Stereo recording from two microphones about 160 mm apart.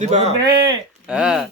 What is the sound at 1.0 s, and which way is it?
Speech, 5° right (ahead or behind).